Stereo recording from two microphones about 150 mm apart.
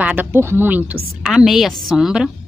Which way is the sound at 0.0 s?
10° right (ahead or behind).